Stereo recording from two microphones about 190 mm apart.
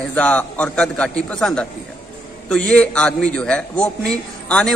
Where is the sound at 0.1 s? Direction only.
5° left (ahead or behind).